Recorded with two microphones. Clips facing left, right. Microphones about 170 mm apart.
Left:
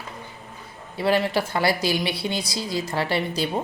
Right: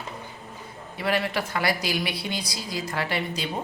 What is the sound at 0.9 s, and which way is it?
Speech, 30° left (ahead or behind).